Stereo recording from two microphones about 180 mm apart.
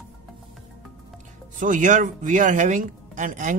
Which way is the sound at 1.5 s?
45° right (ahead or behind).